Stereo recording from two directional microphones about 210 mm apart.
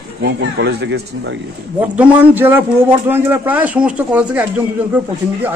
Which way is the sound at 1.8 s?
5° right (ahead or behind).